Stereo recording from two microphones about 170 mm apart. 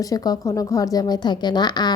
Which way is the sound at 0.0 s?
20° left (ahead or behind).